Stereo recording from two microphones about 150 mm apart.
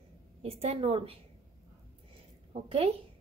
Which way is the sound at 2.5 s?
40° right (ahead or behind).